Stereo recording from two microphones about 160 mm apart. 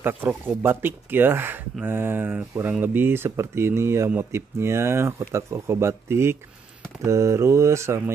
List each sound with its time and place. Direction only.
0.0 s speech: 15° right (ahead or behind)